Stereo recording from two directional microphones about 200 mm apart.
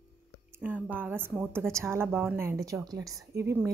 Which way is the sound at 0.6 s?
10° right (ahead or behind).